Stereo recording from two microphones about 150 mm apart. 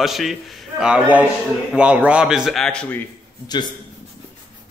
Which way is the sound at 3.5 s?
30° left (ahead or behind).